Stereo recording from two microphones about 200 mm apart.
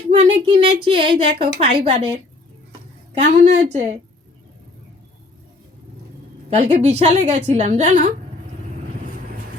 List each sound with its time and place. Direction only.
0.2 s a woman's voice: 25° right (ahead or behind)
3.2 s a woman's voice: 60° right (ahead or behind)
3.7 s a woman's voice: 35° right (ahead or behind)
6.5 s a woman's voice: 30° right (ahead or behind)